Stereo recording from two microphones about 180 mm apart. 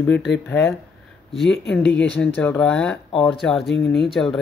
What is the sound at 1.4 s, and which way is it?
Speech, 70° left (ahead or behind).